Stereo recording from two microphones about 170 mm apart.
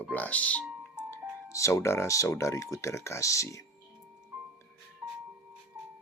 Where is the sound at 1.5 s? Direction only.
20° left (ahead or behind).